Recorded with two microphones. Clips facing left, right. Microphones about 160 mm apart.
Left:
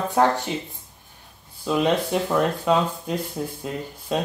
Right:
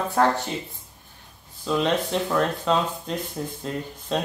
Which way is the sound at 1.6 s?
10° left (ahead or behind).